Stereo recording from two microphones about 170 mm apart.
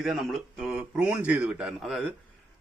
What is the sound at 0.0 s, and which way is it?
A man's voice, centre (ahead or behind).